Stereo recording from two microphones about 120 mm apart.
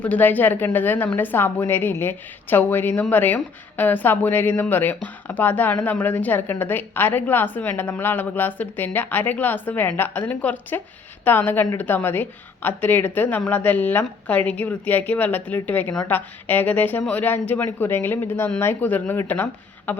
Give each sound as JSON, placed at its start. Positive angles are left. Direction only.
{"t": 0.0, "sound": "a woman's voice", "side_deg": 15}